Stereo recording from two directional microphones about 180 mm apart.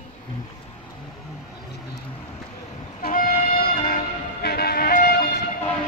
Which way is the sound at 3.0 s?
55° left (ahead or behind).